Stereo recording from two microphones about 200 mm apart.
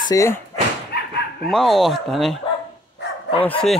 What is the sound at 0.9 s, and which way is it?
Dog, 55° left (ahead or behind).